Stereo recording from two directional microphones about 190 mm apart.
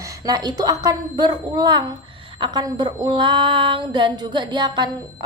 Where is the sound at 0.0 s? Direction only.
20° right (ahead or behind).